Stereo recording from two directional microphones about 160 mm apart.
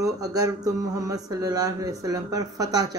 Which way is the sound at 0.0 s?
20° right (ahead or behind).